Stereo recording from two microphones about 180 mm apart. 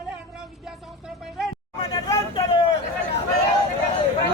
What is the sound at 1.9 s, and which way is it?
Vehicle, 20° left (ahead or behind).